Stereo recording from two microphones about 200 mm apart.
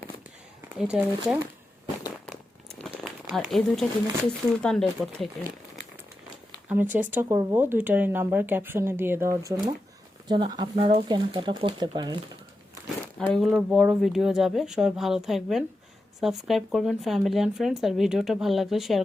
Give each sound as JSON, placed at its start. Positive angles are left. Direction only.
{"t": 0.7, "sound": "speech", "side_deg": -5}
{"t": 2.8, "sound": "crumpling", "side_deg": 0}
{"t": 4.2, "sound": "speech", "side_deg": 5}
{"t": 6.7, "sound": "speech", "side_deg": -10}
{"t": 13.1, "sound": "speech", "side_deg": 0}